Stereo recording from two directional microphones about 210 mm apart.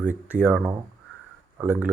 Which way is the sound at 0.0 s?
5° right (ahead or behind).